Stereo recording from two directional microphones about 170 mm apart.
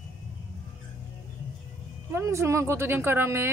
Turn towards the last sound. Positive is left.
turn(degrees=-15)  # may be behind; listen again after turning